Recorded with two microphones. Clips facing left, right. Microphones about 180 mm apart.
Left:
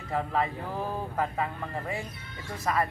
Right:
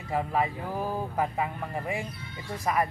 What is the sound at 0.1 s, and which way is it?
Speech, 15° right (ahead or behind).